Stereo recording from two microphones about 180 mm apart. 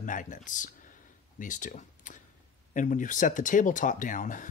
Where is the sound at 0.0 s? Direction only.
45° left (ahead or behind).